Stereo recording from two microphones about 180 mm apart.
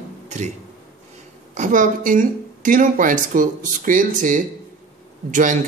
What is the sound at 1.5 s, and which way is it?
Speech, 45° right (ahead or behind).